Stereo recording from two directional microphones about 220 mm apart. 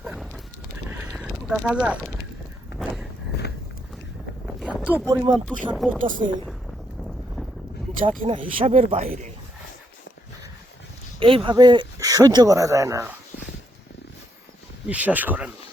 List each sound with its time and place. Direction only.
0.0 s a sound: 5° right (ahead or behind)
2.7 s walk: centre (ahead or behind)
4.6 s speech: 5° right (ahead or behind)
5.7 s speech: centre (ahead or behind)
6.0 s a woman's voice: 35° right (ahead or behind)
8.0 s speech: 25° right (ahead or behind)
11.2 s speech: 25° right (ahead or behind)
14.8 s speech: 5° right (ahead or behind)